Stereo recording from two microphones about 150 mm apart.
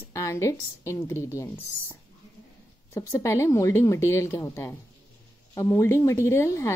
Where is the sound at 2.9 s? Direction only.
20° left (ahead or behind).